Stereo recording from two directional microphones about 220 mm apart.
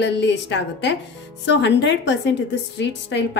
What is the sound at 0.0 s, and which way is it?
A woman's voice, 55° left (ahead or behind).